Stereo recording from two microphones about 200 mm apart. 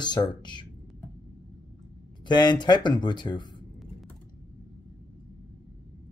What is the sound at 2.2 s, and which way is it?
Speech, 20° left (ahead or behind).